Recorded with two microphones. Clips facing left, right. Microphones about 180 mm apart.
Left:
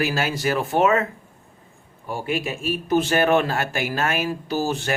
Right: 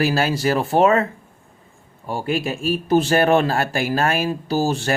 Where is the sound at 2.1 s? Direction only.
35° right (ahead or behind).